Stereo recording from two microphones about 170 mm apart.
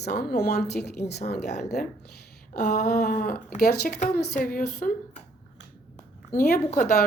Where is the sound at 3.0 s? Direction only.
50° left (ahead or behind).